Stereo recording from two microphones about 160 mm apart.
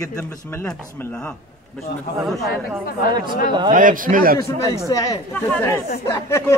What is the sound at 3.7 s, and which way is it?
Speech, 55° right (ahead or behind).